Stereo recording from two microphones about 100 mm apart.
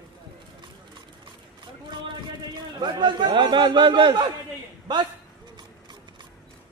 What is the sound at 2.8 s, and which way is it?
A man's voice, 50° right (ahead or behind).